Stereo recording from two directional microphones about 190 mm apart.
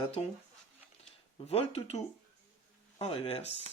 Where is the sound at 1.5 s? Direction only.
35° left (ahead or behind).